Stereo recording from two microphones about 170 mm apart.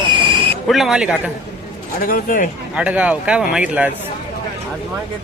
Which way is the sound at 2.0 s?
55° left (ahead or behind).